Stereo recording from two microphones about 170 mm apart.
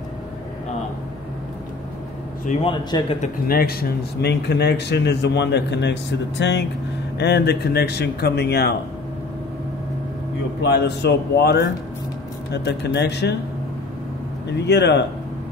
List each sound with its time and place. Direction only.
2.6 s a man's voice: 35° left (ahead or behind)
3.4 s speech: 60° left (ahead or behind)
4.2 s a man's voice: 80° left
7.2 s speech: 80° left
10.6 s a man's voice: 80° left
14.6 s a man's voice: 85° left